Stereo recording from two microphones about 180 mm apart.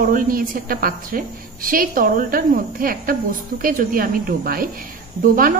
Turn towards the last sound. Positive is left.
turn(degrees=-50)  # may be behind; listen again after turning